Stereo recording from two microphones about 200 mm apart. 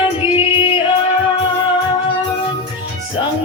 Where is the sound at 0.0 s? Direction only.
25° left (ahead or behind).